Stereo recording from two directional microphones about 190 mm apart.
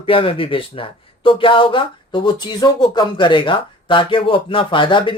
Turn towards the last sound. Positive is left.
turn(degrees=25)  # may be behind; listen again after turning